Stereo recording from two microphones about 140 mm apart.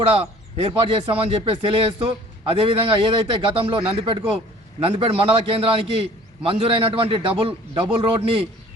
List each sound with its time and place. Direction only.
0.1 s a man's voice: 45° right (ahead or behind)